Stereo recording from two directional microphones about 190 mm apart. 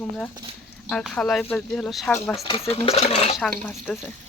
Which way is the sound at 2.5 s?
30° left (ahead or behind).